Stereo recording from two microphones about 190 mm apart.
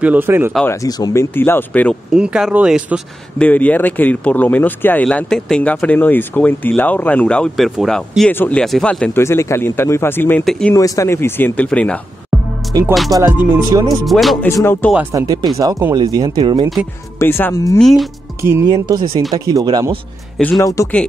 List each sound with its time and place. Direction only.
0.0 s speech: 10° right (ahead or behind)
0.7 s speech: 20° left (ahead or behind)
2.1 s speech: 5° right (ahead or behind)
3.3 s speech: 10° left (ahead or behind)
10.7 s speech: 15° left (ahead or behind)
13.1 s speech: 15° right (ahead or behind); by 14.9 s 10° left (ahead or behind)
15.1 s speech: 20° right (ahead or behind)
17.2 s speech: 10° left (ahead or behind)
17.7 s speech: centre (ahead or behind)
18.4 s speech: 15° right (ahead or behind)
20.5 s speech: 15° left (ahead or behind)